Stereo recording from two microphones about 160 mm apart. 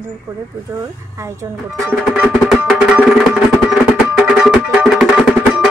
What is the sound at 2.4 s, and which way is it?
Music, 5° right (ahead or behind).